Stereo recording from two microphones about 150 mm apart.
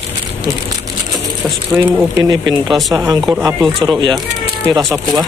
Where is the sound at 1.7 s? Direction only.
25° right (ahead or behind).